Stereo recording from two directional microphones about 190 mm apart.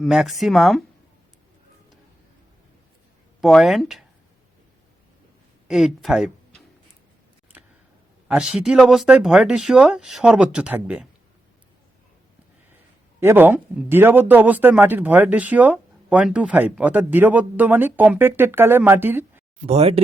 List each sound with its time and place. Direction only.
0.0 s speech: centre (ahead or behind)
3.4 s speech: centre (ahead or behind)
5.6 s speech: centre (ahead or behind)
8.3 s speech: 5° right (ahead or behind)
13.1 s speech: 10° right (ahead or behind)
19.6 s speech: 30° right (ahead or behind)